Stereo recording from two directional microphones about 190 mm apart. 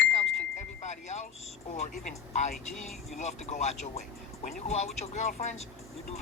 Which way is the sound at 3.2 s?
35° left (ahead or behind).